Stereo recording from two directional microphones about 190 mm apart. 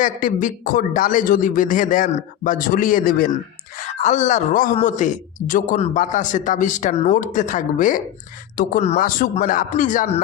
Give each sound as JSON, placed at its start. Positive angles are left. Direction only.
{"t": 0.0, "sound": "speech", "side_deg": 45}
{"t": 3.8, "sound": "a man's voice", "side_deg": 40}